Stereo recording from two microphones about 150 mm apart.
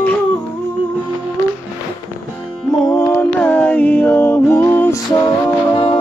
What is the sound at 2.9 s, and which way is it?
Music, 20° left (ahead or behind).